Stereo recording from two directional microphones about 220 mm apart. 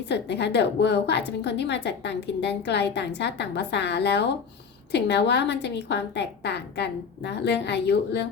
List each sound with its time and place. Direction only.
0.1 s a woman's voice: 50° left (ahead or behind)